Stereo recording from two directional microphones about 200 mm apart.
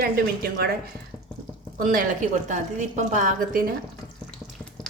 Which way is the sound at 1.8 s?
40° right (ahead or behind).